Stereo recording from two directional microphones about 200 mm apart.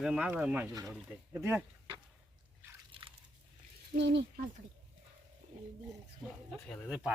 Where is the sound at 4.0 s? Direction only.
60° right (ahead or behind).